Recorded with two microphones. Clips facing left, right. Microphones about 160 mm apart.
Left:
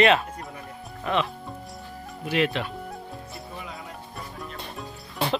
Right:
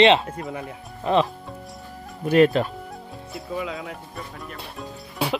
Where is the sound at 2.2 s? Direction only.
45° right (ahead or behind).